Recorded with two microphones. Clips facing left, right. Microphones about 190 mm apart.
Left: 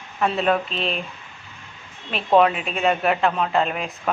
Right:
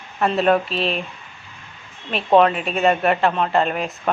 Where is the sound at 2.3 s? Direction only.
Centre (ahead or behind).